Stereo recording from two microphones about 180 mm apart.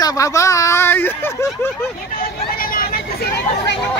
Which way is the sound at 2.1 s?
55° left (ahead or behind).